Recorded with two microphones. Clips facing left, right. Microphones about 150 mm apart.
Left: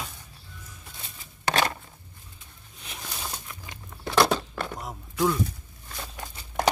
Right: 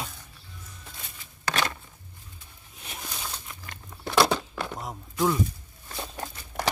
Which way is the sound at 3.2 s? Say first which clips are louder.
Left 1 dB; 15° left (ahead or behind).